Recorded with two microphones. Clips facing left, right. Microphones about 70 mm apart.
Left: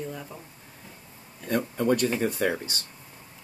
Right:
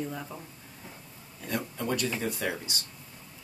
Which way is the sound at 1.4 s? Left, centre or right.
Left.